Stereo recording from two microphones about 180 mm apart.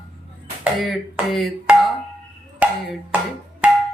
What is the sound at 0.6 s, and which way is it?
Speech, centre (ahead or behind).